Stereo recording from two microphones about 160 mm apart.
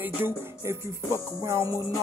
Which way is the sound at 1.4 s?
20° right (ahead or behind).